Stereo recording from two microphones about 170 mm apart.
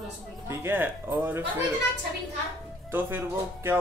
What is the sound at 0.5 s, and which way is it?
Music, 10° right (ahead or behind).